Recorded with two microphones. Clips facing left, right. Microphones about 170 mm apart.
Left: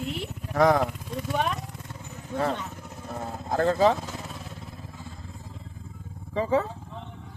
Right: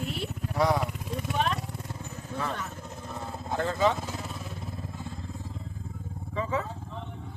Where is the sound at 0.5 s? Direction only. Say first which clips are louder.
Left 5 dB; 50° left (ahead or behind).